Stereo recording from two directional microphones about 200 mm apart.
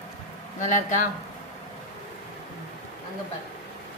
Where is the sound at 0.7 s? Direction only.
40° left (ahead or behind).